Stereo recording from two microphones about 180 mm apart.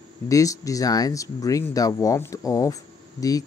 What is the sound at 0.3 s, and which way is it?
Speech, 20° left (ahead or behind).